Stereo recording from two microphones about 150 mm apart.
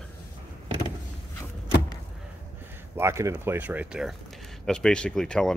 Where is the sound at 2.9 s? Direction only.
20° right (ahead or behind); by 5.5 s 5° left (ahead or behind).